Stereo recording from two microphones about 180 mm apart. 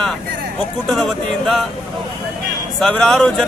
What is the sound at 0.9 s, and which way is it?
Speech, centre (ahead or behind).